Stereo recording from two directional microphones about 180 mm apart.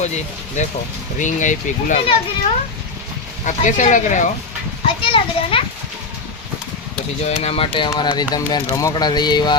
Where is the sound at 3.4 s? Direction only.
45° left (ahead or behind).